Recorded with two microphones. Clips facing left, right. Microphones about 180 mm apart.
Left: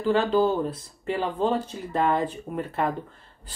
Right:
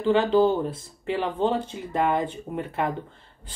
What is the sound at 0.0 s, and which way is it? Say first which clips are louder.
Speech: right 2 dB; 25° right (ahead or behind).